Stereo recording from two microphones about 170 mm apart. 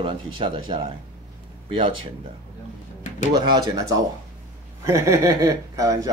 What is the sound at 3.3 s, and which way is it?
A man's voice, 25° right (ahead or behind).